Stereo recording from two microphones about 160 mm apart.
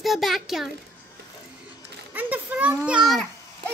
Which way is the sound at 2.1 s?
10° right (ahead or behind).